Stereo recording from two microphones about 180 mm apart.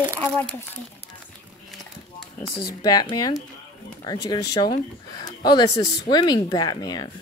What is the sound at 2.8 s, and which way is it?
Speech, 20° left (ahead or behind).